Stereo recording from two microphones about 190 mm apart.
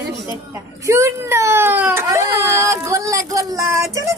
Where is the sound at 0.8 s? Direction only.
15° right (ahead or behind).